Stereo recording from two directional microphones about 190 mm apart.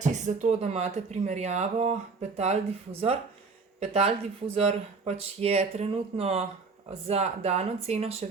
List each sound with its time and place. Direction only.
0.0 s speech: 40° right (ahead or behind)